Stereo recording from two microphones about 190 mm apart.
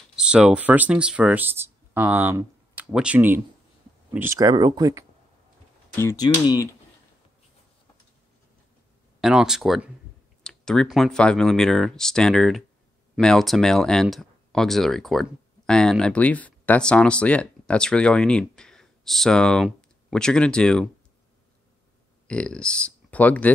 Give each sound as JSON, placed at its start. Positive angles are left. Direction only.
{"t": 0.1, "sound": "speech", "side_deg": -5}
{"t": 5.9, "sound": "speech", "side_deg": 15}
{"t": 9.2, "sound": "speech", "side_deg": -5}
{"t": 22.3, "sound": "speech", "side_deg": 5}